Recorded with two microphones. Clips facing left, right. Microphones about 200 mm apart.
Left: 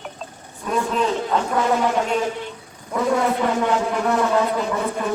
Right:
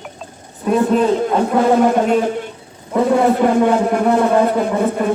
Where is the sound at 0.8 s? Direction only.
50° right (ahead or behind).